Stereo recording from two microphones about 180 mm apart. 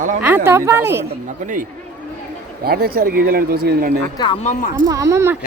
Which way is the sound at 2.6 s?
60° right (ahead or behind).